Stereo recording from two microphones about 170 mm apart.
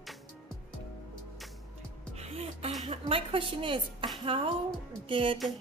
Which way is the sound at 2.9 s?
30° right (ahead or behind).